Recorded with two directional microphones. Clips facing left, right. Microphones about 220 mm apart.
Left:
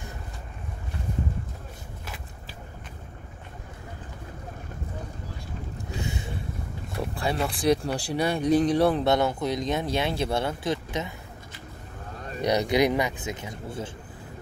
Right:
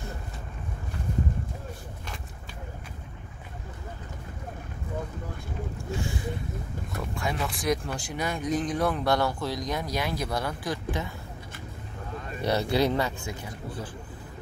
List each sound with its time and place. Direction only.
5.9 s a sound: 20° left (ahead or behind)
7.2 s speech: 35° left (ahead or behind)
12.4 s speech: 15° left (ahead or behind)